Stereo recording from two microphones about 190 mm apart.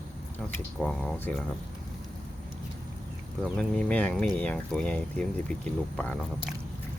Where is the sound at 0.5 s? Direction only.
5° left (ahead or behind).